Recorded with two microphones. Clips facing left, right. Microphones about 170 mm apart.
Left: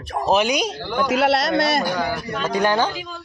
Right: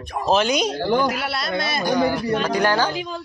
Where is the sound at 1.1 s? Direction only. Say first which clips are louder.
Left 7 dB; 85° left.